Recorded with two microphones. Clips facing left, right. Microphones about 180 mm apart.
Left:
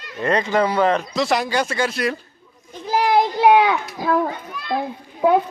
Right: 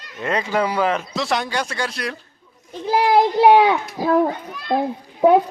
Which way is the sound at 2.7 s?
30° right (ahead or behind).